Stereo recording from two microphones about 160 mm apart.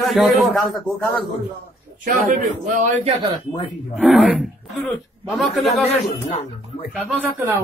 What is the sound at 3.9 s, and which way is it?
Speech, centre (ahead or behind).